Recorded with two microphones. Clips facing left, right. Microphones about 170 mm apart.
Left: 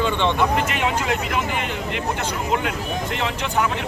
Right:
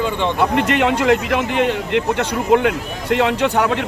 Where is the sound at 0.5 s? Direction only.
65° right (ahead or behind).